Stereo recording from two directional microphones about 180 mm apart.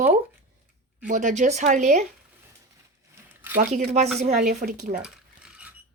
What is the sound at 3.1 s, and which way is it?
Zipper, 10° right (ahead or behind).